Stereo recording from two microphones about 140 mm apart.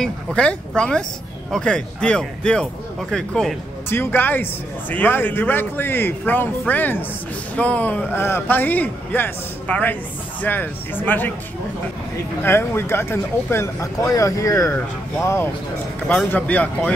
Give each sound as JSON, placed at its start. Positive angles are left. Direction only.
{"t": 0.0, "sound": "speech", "side_deg": 5}
{"t": 3.9, "sound": "speech", "side_deg": 15}
{"t": 12.4, "sound": "speech", "side_deg": 15}